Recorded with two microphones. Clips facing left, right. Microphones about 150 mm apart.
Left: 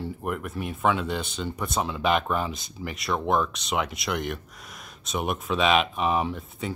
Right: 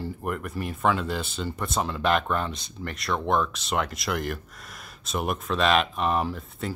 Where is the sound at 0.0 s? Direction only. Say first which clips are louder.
Even; centre (ahead or behind).